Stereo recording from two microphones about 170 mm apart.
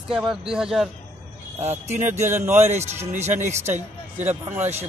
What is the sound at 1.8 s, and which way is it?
Speech, 45° right (ahead or behind).